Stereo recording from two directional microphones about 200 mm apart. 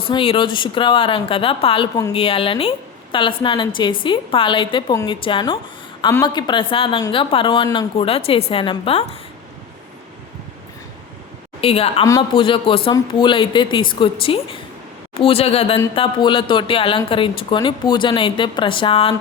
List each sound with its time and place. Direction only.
0.1 s a woman's voice: 25° left (ahead or behind)
11.6 s a woman's voice: 30° left (ahead or behind)